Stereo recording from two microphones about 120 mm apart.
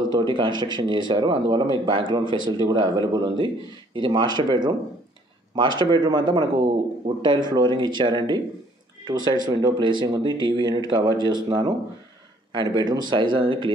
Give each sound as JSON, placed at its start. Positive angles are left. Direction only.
{"t": 0.1, "sound": "speech", "side_deg": -40}